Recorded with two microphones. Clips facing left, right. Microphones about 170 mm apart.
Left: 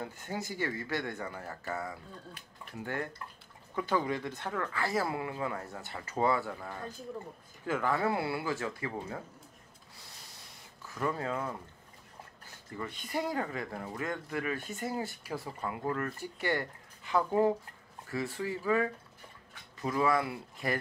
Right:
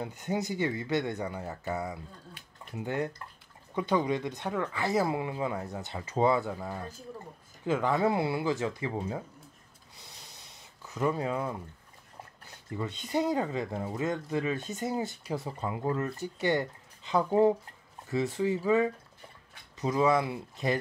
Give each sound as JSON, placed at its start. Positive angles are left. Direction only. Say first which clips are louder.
{"t": 0.0, "sound": "speech", "louder": "right 6 dB", "side_deg": -20}
{"t": 10.9, "sound": "speech", "louder": "right 4 dB", "side_deg": -20}
{"t": 12.7, "sound": "speech", "louder": "right 5 dB", "side_deg": -20}